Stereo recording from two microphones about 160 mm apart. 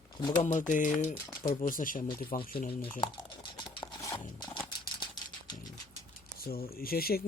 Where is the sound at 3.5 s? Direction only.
20° left (ahead or behind).